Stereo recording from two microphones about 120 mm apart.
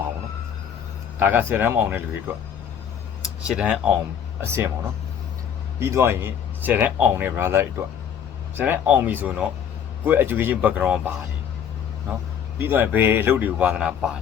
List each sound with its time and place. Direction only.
1.2 s a man's voice: 15° right (ahead or behind)
3.2 s speech: 5° right (ahead or behind)
4.4 s speech: 20° right (ahead or behind)
5.8 s a man's voice: 20° right (ahead or behind)
12.5 s a man's voice: 15° right (ahead or behind)